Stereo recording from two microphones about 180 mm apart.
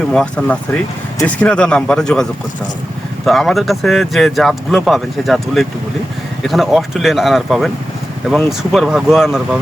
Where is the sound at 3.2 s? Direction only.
Centre (ahead or behind).